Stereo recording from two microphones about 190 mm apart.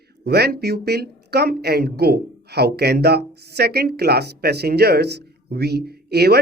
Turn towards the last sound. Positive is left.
turn(degrees=-55)  # may be behind; listen again after turning